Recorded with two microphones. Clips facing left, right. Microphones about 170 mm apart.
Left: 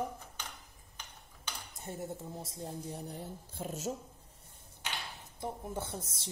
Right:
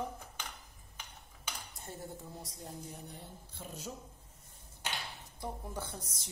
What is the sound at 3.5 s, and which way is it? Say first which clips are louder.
Speech: left 7 dB; 45° left (ahead or behind).